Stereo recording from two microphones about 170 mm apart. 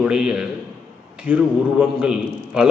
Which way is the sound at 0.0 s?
5° right (ahead or behind).